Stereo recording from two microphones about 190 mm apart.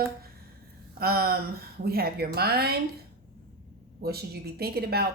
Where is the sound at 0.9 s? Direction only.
50° right (ahead or behind).